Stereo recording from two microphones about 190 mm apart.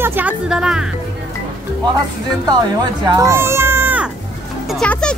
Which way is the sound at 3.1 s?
15° right (ahead or behind).